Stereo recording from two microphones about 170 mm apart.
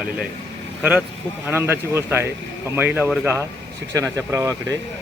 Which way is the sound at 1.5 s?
15° right (ahead or behind).